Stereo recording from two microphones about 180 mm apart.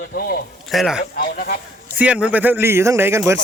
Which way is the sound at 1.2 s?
55° left (ahead or behind).